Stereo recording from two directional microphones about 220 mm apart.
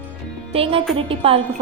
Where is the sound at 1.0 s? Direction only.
25° right (ahead or behind).